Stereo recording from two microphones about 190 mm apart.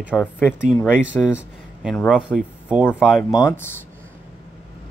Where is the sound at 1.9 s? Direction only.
Centre (ahead or behind).